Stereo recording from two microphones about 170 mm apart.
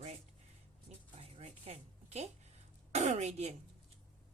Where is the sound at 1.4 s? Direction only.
40° right (ahead or behind).